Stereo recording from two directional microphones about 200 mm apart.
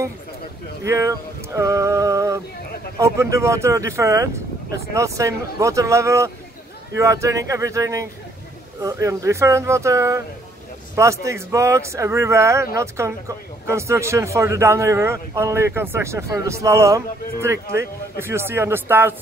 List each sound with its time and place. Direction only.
0.8 s a man's voice: 15° right (ahead or behind)